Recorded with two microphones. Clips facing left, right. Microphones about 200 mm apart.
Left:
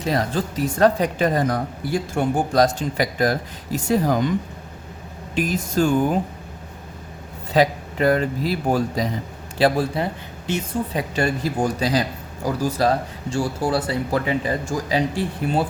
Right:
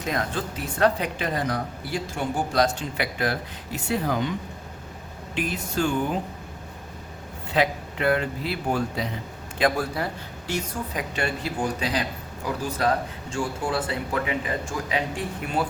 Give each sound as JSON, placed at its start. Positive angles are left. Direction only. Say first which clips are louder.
{"t": 0.0, "sound": "speech", "louder": "left 5 dB", "side_deg": 35}
{"t": 5.3, "sound": "speech", "louder": "left 6 dB", "side_deg": 40}
{"t": 7.5, "sound": "a woman's voice", "louder": "left 5 dB", "side_deg": 40}
{"t": 11.1, "sound": "speech", "louder": "left 6 dB", "side_deg": 40}
{"t": 13.3, "sound": "speech", "louder": "left 5 dB", "side_deg": 35}